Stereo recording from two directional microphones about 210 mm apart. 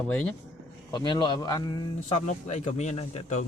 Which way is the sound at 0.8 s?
20° left (ahead or behind).